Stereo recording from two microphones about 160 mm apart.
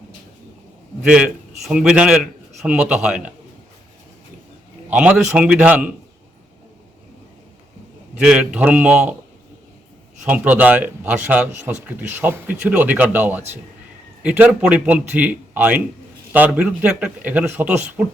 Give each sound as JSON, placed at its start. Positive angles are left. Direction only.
{"t": 1.0, "sound": "a man's voice", "side_deg": -5}
{"t": 4.9, "sound": "a man's voice", "side_deg": -5}
{"t": 8.1, "sound": "a man's voice", "side_deg": -5}
{"t": 10.2, "sound": "a man's voice", "side_deg": -10}